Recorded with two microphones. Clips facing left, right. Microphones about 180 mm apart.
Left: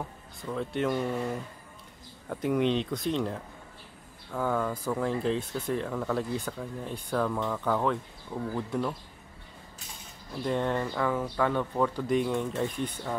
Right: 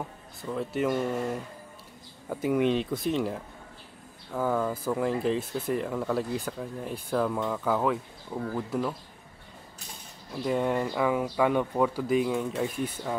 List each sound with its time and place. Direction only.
0.4 s speech: 5° right (ahead or behind)
10.3 s speech: 5° right (ahead or behind)